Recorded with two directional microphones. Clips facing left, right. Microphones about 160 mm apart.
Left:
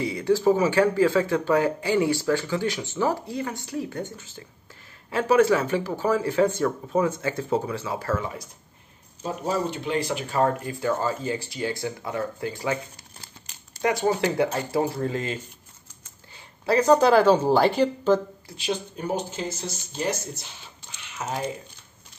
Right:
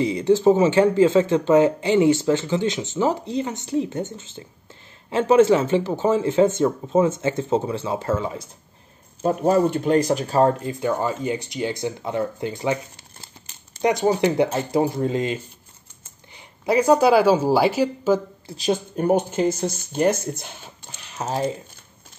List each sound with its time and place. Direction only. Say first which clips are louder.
0.0 s speech: right 4 dB; 25° right (ahead or behind)
9.2 s speech: right 9 dB; 55° right (ahead or behind); by 18.2 s 5° right (ahead or behind)
18.6 s speech: right 7 dB; 50° right (ahead or behind)
21.0 s typing: right 5 dB; 35° right (ahead or behind)